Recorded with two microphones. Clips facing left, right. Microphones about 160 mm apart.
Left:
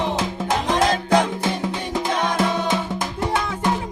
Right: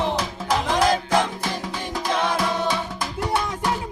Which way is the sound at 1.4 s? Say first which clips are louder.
Left 4 dB; 20° left (ahead or behind).